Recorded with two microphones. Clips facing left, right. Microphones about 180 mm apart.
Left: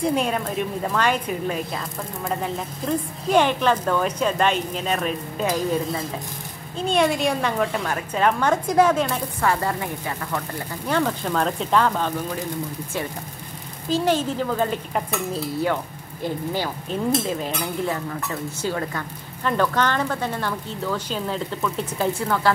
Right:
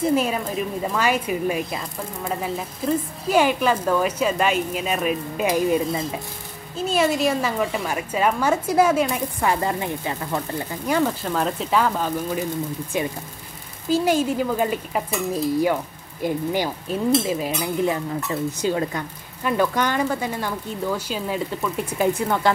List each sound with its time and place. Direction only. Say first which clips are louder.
0.0 s a woman's voice: right 1 dB; 5° right (ahead or behind)
5.5 s a woman's voice: right 3 dB; 15° right (ahead or behind)
6.8 s a woman's voice: even; 5° right (ahead or behind); by 10.4 s 20° right (ahead or behind)
10.9 s a woman's voice: right 1 dB; 5° right (ahead or behind)
13.8 s a woman's voice: right 2 dB; 10° right (ahead or behind)
18.3 s a woman's voice: right 5 dB; 20° right (ahead or behind)